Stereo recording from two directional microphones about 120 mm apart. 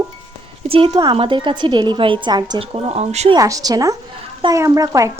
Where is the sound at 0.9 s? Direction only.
35° right (ahead or behind).